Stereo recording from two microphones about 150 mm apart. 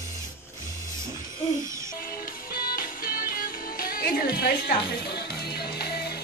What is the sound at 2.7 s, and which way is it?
Music, 70° left (ahead or behind).